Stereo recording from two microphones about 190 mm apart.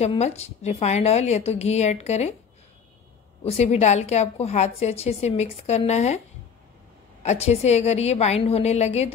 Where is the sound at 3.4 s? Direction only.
35° left (ahead or behind).